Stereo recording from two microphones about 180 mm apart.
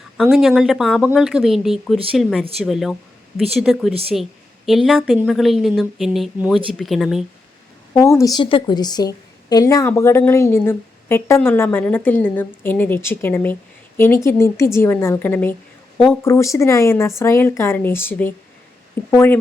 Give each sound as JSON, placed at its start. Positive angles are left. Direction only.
{"t": 0.2, "sound": "a woman's voice", "side_deg": 0}
{"t": 7.9, "sound": "a woman's voice", "side_deg": 15}